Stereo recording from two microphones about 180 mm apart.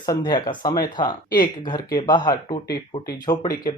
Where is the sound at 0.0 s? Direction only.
25° left (ahead or behind).